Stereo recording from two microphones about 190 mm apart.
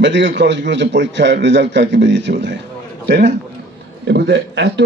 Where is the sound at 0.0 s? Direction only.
70° right (ahead or behind).